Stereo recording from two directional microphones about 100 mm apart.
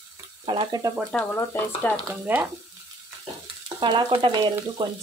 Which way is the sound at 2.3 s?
20° right (ahead or behind).